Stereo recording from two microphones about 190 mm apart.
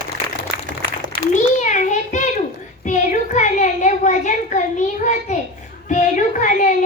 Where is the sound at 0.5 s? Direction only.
55° right (ahead or behind).